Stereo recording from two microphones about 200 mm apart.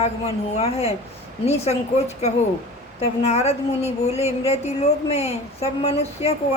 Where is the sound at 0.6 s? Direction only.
30° left (ahead or behind).